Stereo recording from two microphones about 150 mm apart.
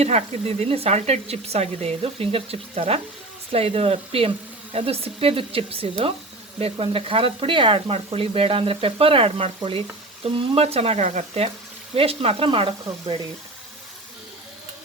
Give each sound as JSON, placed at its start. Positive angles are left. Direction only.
{"t": 0.0, "sound": "speech", "side_deg": -45}